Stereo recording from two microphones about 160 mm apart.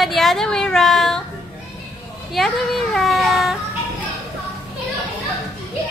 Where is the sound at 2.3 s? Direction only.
Centre (ahead or behind).